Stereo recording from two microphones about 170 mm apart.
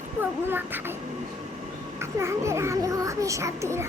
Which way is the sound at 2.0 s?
15° right (ahead or behind).